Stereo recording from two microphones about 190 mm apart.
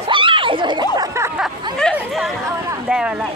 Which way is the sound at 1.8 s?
Centre (ahead or behind).